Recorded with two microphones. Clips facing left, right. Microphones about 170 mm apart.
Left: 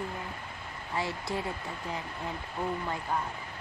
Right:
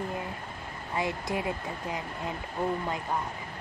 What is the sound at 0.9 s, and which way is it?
Speech, 20° right (ahead or behind).